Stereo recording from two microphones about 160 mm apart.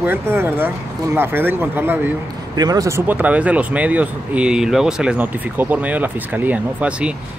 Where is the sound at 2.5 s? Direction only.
25° right (ahead or behind).